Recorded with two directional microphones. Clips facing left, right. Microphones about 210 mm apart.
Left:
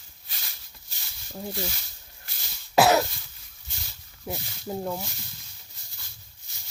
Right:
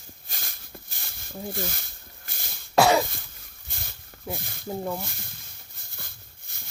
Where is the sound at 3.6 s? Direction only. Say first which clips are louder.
Right 3 dB; 55° right (ahead or behind).